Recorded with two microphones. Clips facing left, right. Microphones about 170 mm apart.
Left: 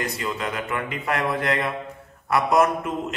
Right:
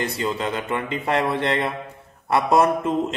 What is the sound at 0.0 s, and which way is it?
A man's voice, 30° right (ahead or behind).